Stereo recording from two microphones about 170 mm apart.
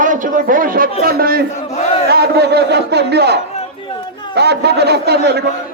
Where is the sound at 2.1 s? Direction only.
70° right (ahead or behind).